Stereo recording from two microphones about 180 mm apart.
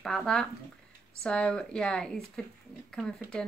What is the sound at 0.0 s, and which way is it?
A woman's voice, centre (ahead or behind).